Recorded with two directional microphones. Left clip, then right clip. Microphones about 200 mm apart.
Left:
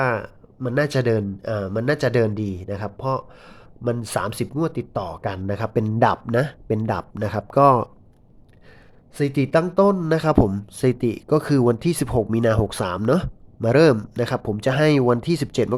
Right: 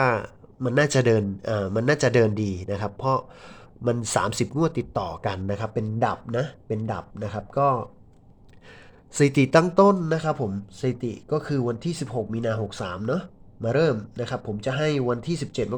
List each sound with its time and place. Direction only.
0.0 s speech: 5° left (ahead or behind); by 7.9 s 25° left (ahead or behind)
9.1 s speech: 5° right (ahead or behind)
10.0 s speech: 15° left (ahead or behind)
10.4 s speech: 30° left (ahead or behind)